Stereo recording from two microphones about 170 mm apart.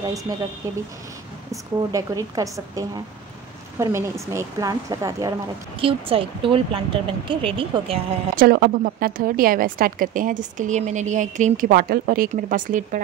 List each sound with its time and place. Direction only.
0.3 s speech: 20° right (ahead or behind)
1.5 s speech: 20° right (ahead or behind)
3.8 s speech: 15° right (ahead or behind)
5.8 s speech: 35° right (ahead or behind)
8.4 s a woman's voice: 60° right (ahead or behind)